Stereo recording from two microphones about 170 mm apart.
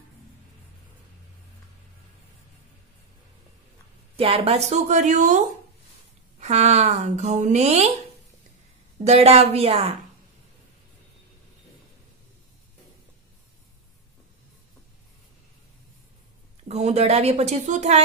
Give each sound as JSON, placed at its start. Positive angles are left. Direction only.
{"t": 4.2, "sound": "speech", "side_deg": -35}
{"t": 6.4, "sound": "a woman's voice", "side_deg": -40}
{"t": 9.0, "sound": "a woman's voice", "side_deg": -40}
{"t": 16.6, "sound": "a woman's voice", "side_deg": -40}